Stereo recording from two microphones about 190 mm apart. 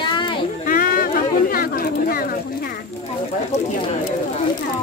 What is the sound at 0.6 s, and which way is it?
Speech, 50° left (ahead or behind).